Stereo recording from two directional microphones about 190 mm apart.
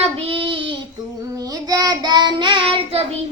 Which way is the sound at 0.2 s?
25° right (ahead or behind).